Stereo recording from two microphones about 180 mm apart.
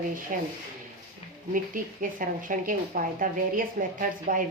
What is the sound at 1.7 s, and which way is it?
A woman's voice, 50° right (ahead or behind).